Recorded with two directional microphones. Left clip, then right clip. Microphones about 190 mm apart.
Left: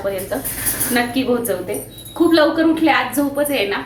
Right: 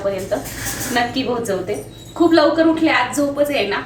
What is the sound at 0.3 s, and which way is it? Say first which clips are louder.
Speech: right 2 dB; 10° left (ahead or behind).